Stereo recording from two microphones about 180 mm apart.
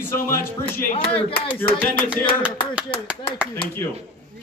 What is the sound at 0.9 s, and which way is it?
Speech, 30° left (ahead or behind).